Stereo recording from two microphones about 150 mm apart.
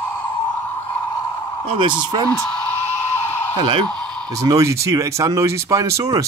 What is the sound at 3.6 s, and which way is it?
Speech, 35° right (ahead or behind).